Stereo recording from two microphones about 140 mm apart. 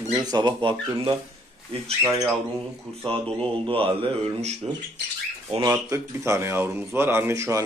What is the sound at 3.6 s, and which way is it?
Speech, 40° right (ahead or behind).